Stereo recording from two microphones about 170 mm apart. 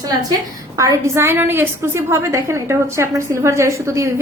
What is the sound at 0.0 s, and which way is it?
A woman's voice, 20° right (ahead or behind).